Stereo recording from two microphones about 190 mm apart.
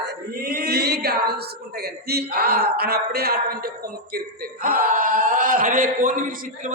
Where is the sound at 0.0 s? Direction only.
60° right (ahead or behind).